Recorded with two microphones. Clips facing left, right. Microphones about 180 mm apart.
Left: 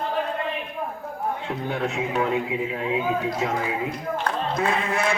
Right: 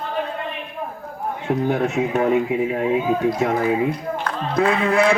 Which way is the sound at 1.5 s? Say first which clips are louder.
Right 12 dB; 45° right (ahead or behind).